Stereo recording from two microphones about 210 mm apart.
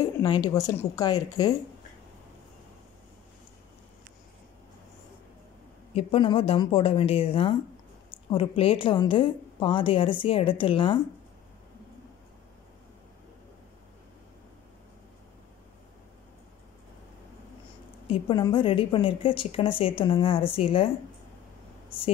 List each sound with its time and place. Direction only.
0.2 s speech: 15° left (ahead or behind)
5.9 s a woman's voice: 25° left (ahead or behind)
18.0 s a woman's voice: 25° left (ahead or behind)